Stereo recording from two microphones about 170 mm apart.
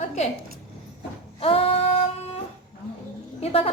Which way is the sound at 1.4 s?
35° left (ahead or behind).